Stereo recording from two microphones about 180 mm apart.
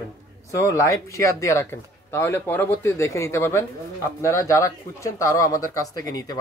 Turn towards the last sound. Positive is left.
turn(degrees=20)  # may be behind; listen again after turning